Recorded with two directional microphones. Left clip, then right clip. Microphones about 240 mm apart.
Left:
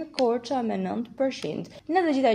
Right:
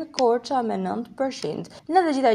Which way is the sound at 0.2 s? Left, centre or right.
Right.